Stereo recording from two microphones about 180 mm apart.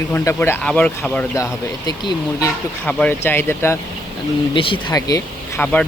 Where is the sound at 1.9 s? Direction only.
20° left (ahead or behind).